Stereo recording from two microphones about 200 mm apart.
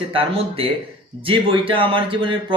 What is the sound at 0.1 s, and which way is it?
Speech, 25° right (ahead or behind).